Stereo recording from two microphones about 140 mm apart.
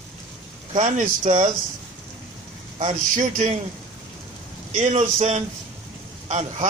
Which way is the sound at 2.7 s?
60° right (ahead or behind).